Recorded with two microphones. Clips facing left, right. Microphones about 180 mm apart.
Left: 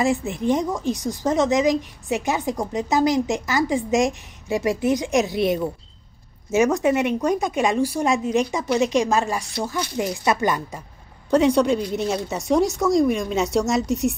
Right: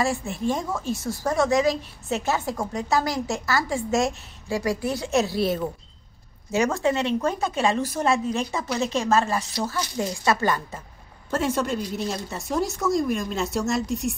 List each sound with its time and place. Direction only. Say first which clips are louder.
0.0 s a woman's voice: left 4 dB; 20° left (ahead or behind)
11.3 s a woman's voice: left 7 dB; 5° right (ahead or behind)